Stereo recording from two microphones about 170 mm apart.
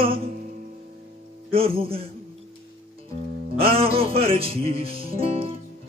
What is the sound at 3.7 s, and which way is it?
Music, 35° right (ahead or behind).